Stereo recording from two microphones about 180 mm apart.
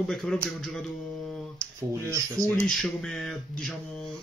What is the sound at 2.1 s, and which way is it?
Speech, 15° right (ahead or behind).